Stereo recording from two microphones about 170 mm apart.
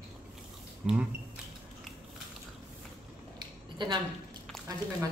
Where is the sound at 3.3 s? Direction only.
25° right (ahead or behind).